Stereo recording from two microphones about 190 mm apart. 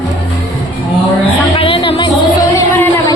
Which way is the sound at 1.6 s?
30° left (ahead or behind).